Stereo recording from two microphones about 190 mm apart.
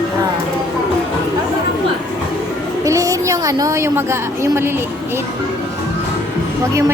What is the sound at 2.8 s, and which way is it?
A woman's voice, 15° right (ahead or behind).